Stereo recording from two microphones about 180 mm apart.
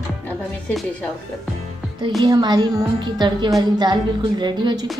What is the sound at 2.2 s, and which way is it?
A woman's voice, 25° right (ahead or behind).